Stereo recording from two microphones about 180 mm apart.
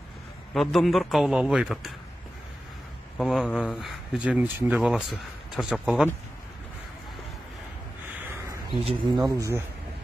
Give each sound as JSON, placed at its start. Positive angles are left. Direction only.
{"t": 0.6, "sound": "speech", "side_deg": 0}
{"t": 3.2, "sound": "speech", "side_deg": 0}
{"t": 8.8, "sound": "speech", "side_deg": -25}